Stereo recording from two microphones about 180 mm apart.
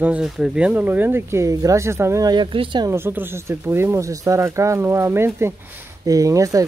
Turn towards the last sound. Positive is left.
turn(degrees=-20)  # may be behind; listen again after turning